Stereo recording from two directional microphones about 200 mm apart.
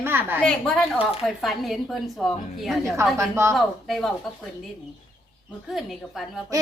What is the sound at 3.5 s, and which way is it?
Speech, centre (ahead or behind).